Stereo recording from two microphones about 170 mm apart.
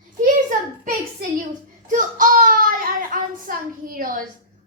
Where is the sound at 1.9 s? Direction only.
50° right (ahead or behind).